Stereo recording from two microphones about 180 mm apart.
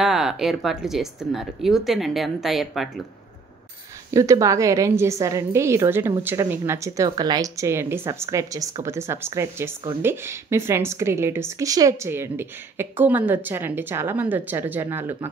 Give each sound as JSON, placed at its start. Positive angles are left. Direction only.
{"t": 0.0, "sound": "speech", "side_deg": -5}
{"t": 4.1, "sound": "a woman's voice", "side_deg": -15}